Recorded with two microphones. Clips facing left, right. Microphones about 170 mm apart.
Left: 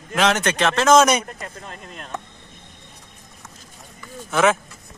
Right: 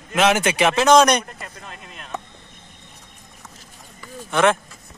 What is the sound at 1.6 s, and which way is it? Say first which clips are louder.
Speech: left 2 dB; 40° left (ahead or behind).